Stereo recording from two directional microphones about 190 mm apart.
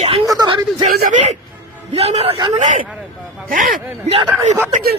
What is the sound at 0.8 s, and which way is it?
A man's voice, 40° right (ahead or behind).